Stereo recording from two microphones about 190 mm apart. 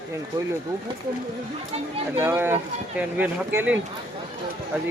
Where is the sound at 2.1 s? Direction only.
15° right (ahead or behind).